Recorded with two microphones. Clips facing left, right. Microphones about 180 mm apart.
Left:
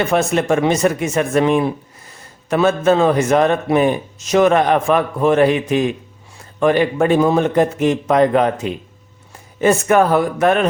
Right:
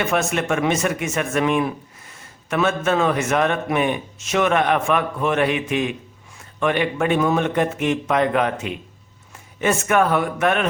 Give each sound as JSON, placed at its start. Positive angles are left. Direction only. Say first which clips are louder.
{"t": 0.0, "sound": "a man's voice", "louder": "left 5 dB", "side_deg": 35}